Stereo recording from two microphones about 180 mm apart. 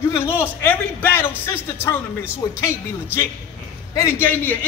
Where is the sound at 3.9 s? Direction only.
15° left (ahead or behind).